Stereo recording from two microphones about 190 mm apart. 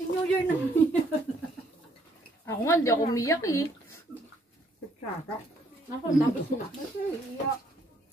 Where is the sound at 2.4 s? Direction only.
15° left (ahead or behind).